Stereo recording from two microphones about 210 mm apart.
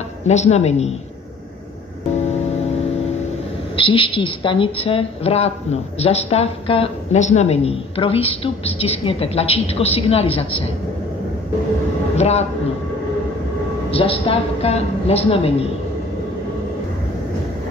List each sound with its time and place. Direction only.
0.3 s a woman's voice: 30° left (ahead or behind)
3.7 s a woman's voice: 25° left (ahead or behind)
12.2 s a woman's voice: 30° left (ahead or behind)
13.8 s a woman's voice: 25° left (ahead or behind)